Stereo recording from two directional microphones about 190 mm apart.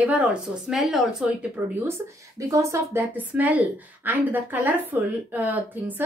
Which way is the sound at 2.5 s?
15° right (ahead or behind).